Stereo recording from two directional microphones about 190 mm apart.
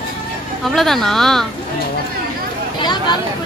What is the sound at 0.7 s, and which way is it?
Speech, centre (ahead or behind).